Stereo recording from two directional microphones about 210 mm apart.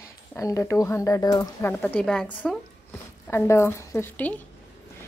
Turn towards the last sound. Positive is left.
turn(degrees=10)  # may be behind; listen again after turning